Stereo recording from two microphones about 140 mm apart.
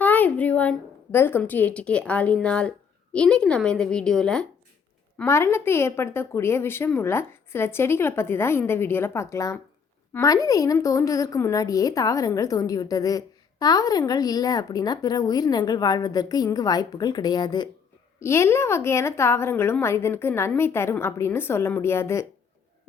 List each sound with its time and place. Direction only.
0.0 s a woman's voice: 10° left (ahead or behind)
5.1 s a woman's voice: 20° left (ahead or behind)
18.2 s a woman's voice: 20° left (ahead or behind)